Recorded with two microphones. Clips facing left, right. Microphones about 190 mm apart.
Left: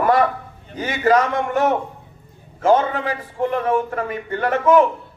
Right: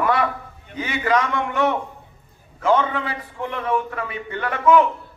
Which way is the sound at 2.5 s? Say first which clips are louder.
Left 3 dB; 45° left (ahead or behind).